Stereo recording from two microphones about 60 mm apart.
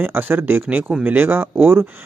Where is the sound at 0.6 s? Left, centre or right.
Right.